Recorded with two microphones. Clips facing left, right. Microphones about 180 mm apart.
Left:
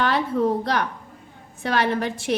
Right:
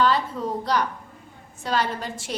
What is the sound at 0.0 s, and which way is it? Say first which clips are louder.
A woman's voice: left 2 dB; 60° left (ahead or behind).